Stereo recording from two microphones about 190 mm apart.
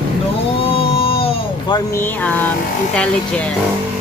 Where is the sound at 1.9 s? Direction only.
10° left (ahead or behind).